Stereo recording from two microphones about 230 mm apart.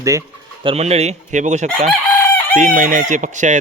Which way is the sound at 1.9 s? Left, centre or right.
Centre.